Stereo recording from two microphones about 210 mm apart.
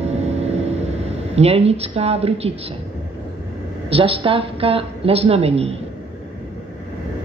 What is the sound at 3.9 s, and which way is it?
A woman's voice, 25° right (ahead or behind).